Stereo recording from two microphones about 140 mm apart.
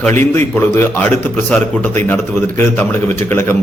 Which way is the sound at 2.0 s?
15° left (ahead or behind).